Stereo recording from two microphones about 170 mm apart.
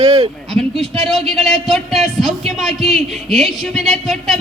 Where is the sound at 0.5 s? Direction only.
Centre (ahead or behind).